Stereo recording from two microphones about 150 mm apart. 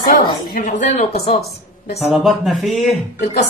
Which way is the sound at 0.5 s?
60° left (ahead or behind).